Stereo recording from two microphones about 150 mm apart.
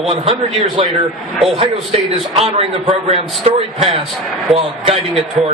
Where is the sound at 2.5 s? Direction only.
40° right (ahead or behind).